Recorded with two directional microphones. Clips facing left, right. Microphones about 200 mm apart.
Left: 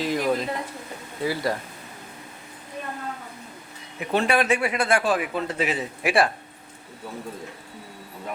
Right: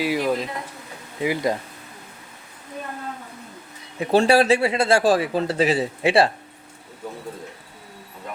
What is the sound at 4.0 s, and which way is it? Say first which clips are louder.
Speech: right 6 dB; 30° right (ahead or behind).